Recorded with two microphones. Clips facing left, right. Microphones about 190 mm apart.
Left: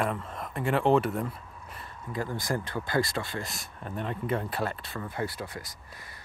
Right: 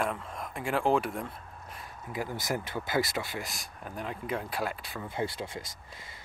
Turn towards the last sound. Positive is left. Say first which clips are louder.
# even
turn(degrees=-25)  # may be behind; listen again after turning